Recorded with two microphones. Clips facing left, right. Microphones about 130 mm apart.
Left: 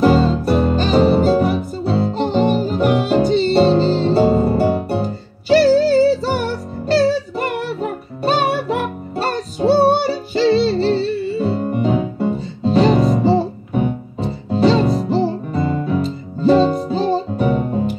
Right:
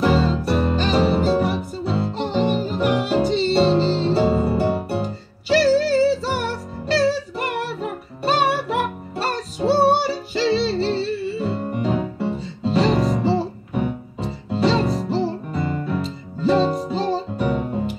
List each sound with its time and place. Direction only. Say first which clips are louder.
0.0 s music: left 5 dB; 40° left (ahead or behind)